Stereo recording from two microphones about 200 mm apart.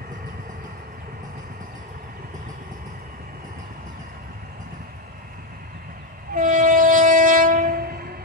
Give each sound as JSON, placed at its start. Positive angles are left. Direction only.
{"t": 6.3, "sound": "train", "side_deg": -45}